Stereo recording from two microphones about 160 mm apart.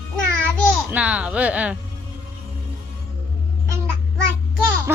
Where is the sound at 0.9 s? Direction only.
10° right (ahead or behind).